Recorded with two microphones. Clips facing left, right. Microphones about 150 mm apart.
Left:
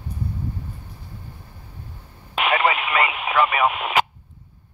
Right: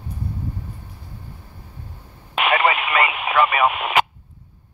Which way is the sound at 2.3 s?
65° right (ahead or behind).